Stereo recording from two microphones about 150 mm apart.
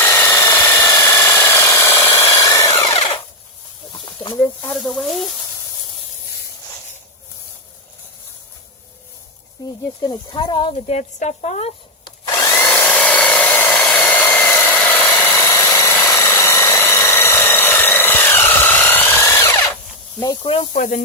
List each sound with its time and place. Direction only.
0.0 s tools: 15° left (ahead or behind)
4.0 s snake: 30° left (ahead or behind)
4.4 s speech: 5° left (ahead or behind)
10.0 s speech: 30° left (ahead or behind)
10.8 s speech: 50° left (ahead or behind)
12.0 s drill: 25° left (ahead or behind)
12.7 s a sound: 10° left (ahead or behind)
20.2 s speech: 35° left (ahead or behind)
20.7 s speech: 60° left (ahead or behind)